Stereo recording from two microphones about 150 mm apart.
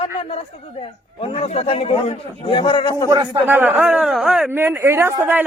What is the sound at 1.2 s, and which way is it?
A man's voice, 40° left (ahead or behind).